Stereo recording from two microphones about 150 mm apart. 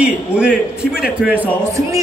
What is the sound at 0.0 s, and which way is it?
A man's voice, 5° right (ahead or behind).